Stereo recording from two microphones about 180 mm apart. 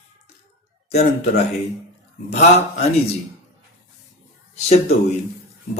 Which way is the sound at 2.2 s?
35° left (ahead or behind).